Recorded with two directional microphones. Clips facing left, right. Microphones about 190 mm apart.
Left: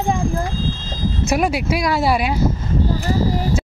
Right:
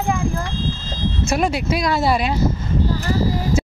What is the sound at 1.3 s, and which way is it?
Speech, 10° left (ahead or behind).